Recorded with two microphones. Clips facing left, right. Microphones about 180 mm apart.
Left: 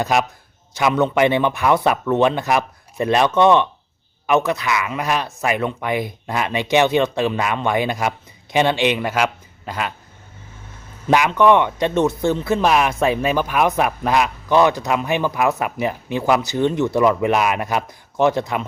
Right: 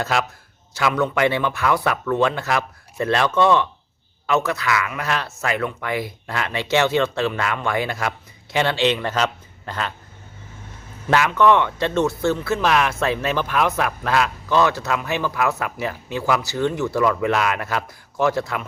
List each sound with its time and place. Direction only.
0.0 s speech: 20° left (ahead or behind)
11.1 s speech: 15° left (ahead or behind)